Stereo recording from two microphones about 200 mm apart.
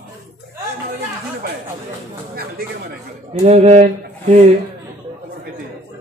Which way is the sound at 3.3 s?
30° right (ahead or behind).